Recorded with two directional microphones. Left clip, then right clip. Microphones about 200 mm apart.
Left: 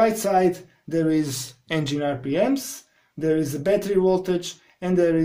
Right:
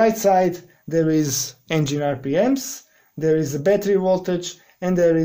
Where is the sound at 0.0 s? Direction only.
30° right (ahead or behind).